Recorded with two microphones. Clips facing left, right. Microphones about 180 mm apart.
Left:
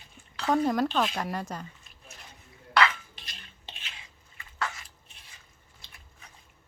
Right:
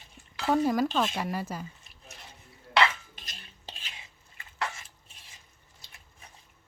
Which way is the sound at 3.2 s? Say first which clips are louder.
Even; 40° right (ahead or behind).